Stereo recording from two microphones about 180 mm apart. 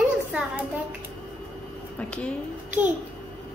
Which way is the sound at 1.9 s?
5° left (ahead or behind).